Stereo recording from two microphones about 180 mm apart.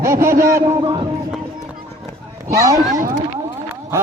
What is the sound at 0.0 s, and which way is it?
Speech, 15° right (ahead or behind).